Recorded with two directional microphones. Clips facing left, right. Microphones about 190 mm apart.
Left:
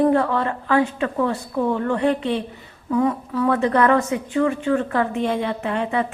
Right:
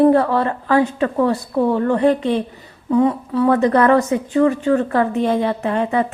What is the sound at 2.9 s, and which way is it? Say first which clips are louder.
A woman's voice: right 4 dB; 30° right (ahead or behind).